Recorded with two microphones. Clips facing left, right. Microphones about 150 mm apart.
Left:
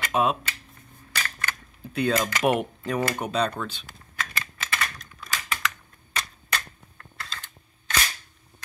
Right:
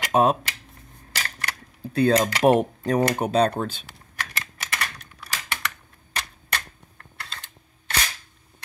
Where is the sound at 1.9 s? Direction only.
30° right (ahead or behind).